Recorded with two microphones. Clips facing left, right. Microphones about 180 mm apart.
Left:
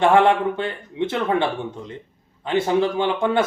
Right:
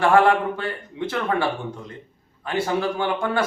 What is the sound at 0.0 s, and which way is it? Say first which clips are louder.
Speech: left 1 dB; 25° left (ahead or behind).